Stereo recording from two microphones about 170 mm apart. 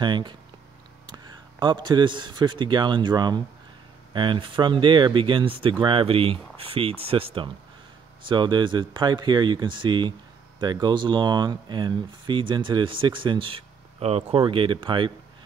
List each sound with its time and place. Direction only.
0.0 s speech: 25° right (ahead or behind)